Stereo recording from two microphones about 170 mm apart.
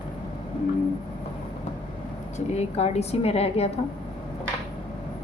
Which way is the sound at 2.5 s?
40° left (ahead or behind).